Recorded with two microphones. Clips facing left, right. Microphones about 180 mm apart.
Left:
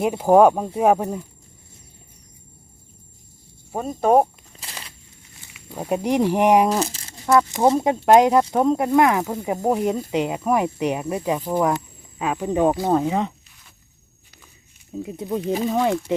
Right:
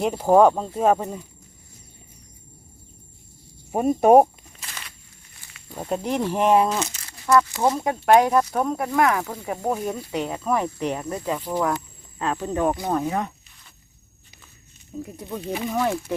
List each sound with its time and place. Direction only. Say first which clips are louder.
0.0 s speech: left 2 dB; 5° left (ahead or behind)
3.7 s speech: right 3 dB; 15° right (ahead or behind)
4.6 s a sound: left 2 dB; 30° left (ahead or behind)
5.7 s speech: left 4 dB; 15° left (ahead or behind)
6.7 s speech: left 4 dB; 35° left (ahead or behind)
15.0 s speech: left 8 dB; 25° left (ahead or behind)